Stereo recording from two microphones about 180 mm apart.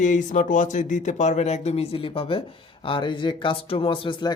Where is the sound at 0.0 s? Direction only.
45° left (ahead or behind).